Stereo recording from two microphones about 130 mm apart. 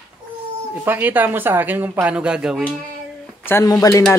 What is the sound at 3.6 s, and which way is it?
Speech, 25° left (ahead or behind).